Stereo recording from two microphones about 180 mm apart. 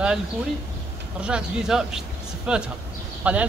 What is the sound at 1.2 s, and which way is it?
A man's voice, 5° right (ahead or behind).